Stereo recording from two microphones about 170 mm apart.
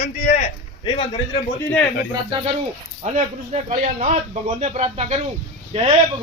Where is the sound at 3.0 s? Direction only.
45° right (ahead or behind).